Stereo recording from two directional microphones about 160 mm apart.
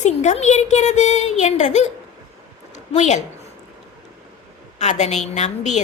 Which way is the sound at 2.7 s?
45° left (ahead or behind).